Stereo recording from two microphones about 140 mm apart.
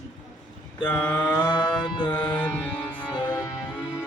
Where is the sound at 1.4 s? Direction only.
30° left (ahead or behind).